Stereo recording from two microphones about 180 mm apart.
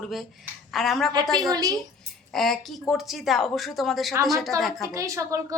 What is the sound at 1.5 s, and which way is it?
Speech, 20° right (ahead or behind).